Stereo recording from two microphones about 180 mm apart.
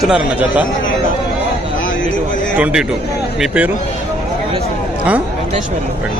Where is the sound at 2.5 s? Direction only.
5° right (ahead or behind).